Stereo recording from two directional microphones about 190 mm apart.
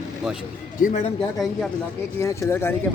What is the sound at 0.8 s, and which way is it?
Speech, 45° left (ahead or behind).